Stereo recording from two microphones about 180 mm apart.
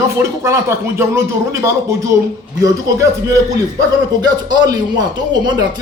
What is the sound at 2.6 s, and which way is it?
A man's voice, 20° right (ahead or behind).